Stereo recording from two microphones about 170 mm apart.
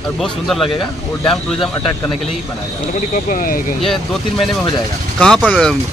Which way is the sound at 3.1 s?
55° left (ahead or behind).